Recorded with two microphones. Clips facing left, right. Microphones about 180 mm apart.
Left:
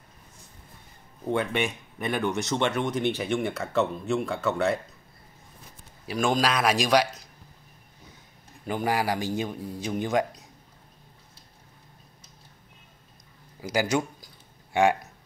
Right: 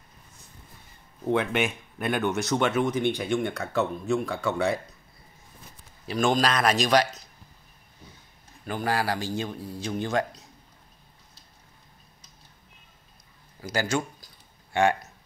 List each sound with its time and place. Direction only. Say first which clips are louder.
1.2 s speech: right 2 dB; centre (ahead or behind)
6.0 s a man's voice: right 1 dB; 5° left (ahead or behind)
8.6 s a man's voice: left 1 dB; 15° left (ahead or behind)
13.6 s a man's voice: left 2 dB; 15° left (ahead or behind)